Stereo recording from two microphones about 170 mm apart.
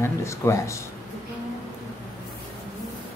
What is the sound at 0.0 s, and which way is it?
Speech, 15° left (ahead or behind).